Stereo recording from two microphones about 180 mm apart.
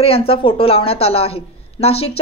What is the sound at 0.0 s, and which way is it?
Speech, 30° left (ahead or behind).